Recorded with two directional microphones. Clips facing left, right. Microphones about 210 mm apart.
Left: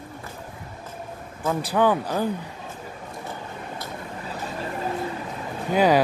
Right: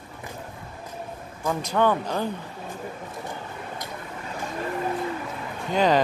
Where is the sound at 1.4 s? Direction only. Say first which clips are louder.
Left 2 dB; 5° left (ahead or behind).